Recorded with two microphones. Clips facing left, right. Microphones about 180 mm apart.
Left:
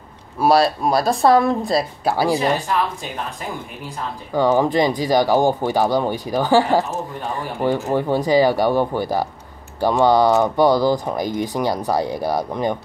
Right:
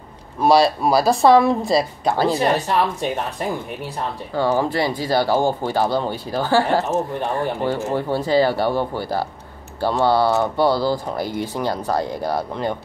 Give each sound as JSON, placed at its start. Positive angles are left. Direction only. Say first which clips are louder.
{"t": 0.4, "sound": "a woman's voice", "louder": "right 1 dB", "side_deg": 0}
{"t": 2.1, "sound": "speech", "louder": "left 1 dB", "side_deg": 10}
{"t": 4.4, "sound": "speech", "louder": "left 3 dB", "side_deg": 15}